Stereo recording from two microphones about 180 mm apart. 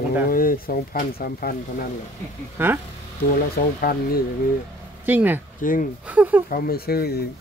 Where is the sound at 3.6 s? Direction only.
55° left (ahead or behind).